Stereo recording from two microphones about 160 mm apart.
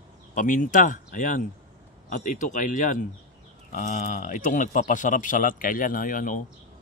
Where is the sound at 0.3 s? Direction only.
55° left (ahead or behind).